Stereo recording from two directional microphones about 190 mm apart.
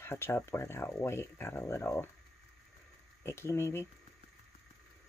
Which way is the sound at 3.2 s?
15° left (ahead or behind).